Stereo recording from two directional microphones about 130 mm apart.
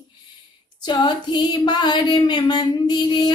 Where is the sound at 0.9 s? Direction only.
35° left (ahead or behind).